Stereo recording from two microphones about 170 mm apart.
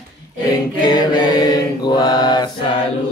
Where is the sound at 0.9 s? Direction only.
25° left (ahead or behind).